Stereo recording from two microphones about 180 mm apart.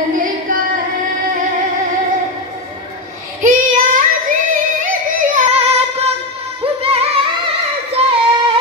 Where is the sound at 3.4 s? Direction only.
45° right (ahead or behind).